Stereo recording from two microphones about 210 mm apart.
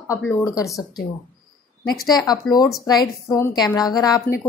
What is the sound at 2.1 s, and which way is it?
A woman's voice, 20° left (ahead or behind).